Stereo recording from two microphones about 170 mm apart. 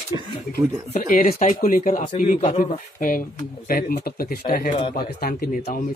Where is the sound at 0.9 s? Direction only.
55° left (ahead or behind).